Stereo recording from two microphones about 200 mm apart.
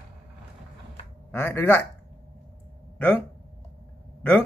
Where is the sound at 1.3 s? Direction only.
10° left (ahead or behind).